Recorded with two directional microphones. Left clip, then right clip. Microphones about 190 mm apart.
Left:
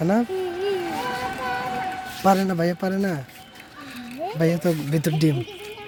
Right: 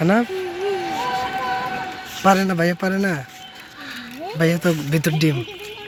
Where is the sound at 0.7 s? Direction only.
60° left (ahead or behind).